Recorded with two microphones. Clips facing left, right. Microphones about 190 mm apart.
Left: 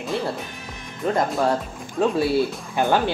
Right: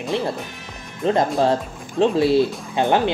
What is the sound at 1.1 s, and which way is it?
Speech, 25° right (ahead or behind).